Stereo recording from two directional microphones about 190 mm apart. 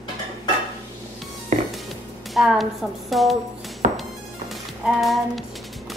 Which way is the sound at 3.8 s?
40° right (ahead or behind).